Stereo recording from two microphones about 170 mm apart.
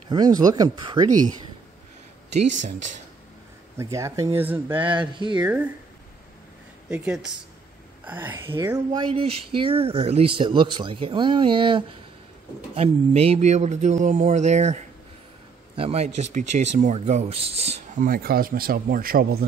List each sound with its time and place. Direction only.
0.1 s speech: 25° right (ahead or behind)
3.7 s speech: 20° right (ahead or behind)
4.8 s speech: 25° right (ahead or behind)
5.4 s speech: 10° right (ahead or behind)
6.9 s speech: 5° right (ahead or behind); by 18.0 s 40° right (ahead or behind)
18.0 s a man's voice: 60° right (ahead or behind)